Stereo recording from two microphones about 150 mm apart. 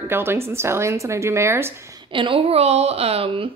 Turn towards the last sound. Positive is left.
turn(degrees=-40)  # may be behind; listen again after turning